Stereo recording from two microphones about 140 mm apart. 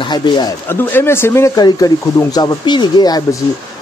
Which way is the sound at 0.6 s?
15° left (ahead or behind).